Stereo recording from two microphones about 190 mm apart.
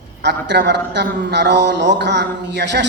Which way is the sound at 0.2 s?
65° right (ahead or behind).